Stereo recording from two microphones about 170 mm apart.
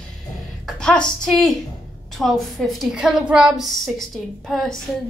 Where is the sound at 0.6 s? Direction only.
5° left (ahead or behind).